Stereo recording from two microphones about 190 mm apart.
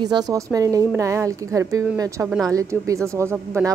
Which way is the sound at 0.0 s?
20° right (ahead or behind).